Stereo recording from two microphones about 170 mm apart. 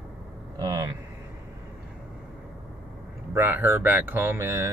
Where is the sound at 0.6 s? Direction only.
20° right (ahead or behind).